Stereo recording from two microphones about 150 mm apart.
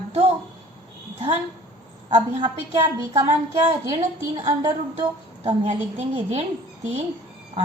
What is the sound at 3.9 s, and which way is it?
A woman's voice, 40° right (ahead or behind).